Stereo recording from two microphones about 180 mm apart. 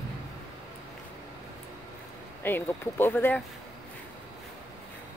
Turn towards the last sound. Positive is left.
turn(degrees=10)  # may be behind; listen again after turning